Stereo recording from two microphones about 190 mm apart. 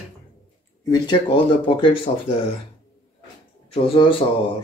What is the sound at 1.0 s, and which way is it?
Speech, 25° left (ahead or behind).